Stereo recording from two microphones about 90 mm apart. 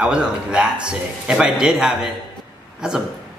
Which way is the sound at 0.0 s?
10° right (ahead or behind).